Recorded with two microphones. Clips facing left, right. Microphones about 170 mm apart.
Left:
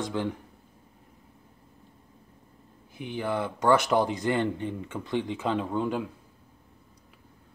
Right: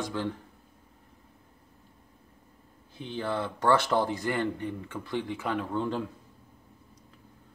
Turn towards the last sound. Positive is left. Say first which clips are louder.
# left 2 dB
turn(degrees=15)  # may be behind; listen again after turning